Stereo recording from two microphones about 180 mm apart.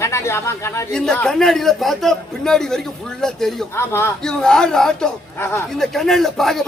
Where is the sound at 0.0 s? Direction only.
15° left (ahead or behind).